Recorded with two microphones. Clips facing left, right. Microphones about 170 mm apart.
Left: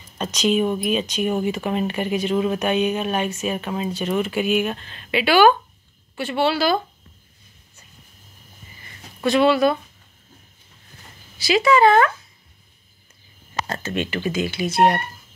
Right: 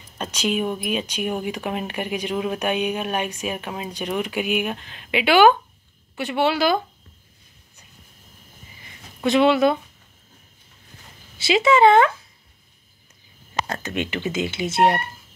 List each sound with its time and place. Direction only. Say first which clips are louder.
0.2 s speech: left 4 dB; 10° right (ahead or behind)
9.2 s speech: even; 20° right (ahead or behind)
11.3 s speech: even; 25° right (ahead or behind)
13.8 s speech: left 2 dB; 20° right (ahead or behind)